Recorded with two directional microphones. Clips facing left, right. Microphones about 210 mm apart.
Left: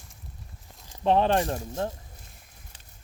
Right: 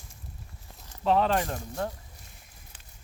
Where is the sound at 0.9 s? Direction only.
20° left (ahead or behind).